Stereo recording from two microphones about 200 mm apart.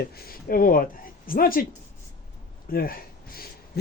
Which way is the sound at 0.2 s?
50° left (ahead or behind).